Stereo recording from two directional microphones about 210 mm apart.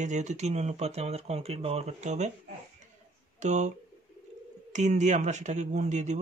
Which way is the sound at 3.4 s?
35° right (ahead or behind).